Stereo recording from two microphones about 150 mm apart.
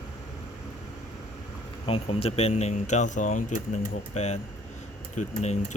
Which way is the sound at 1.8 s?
40° left (ahead or behind).